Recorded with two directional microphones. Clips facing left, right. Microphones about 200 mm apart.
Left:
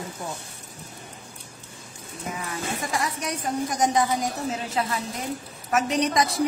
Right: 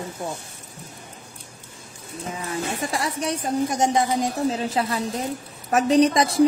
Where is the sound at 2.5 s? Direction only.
30° right (ahead or behind).